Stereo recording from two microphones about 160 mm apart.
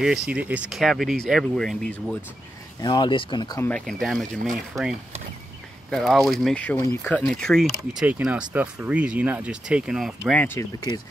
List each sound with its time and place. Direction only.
0.3 s speech: 10° right (ahead or behind)
2.8 s speech: 30° left (ahead or behind)
3.6 s speech: 5° left (ahead or behind)
4.7 s speech: 20° right (ahead or behind)
5.9 s speech: centre (ahead or behind)
10.4 s speech: 15° left (ahead or behind)